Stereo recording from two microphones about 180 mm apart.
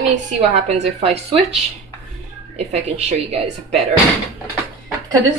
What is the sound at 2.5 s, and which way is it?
Speech, 35° right (ahead or behind).